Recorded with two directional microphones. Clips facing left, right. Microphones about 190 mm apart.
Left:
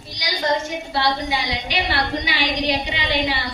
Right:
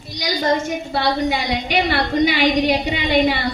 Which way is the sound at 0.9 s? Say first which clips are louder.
Right 3 dB; 50° right (ahead or behind).